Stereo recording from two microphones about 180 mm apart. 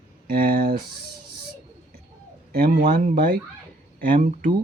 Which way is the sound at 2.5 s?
55° right (ahead or behind).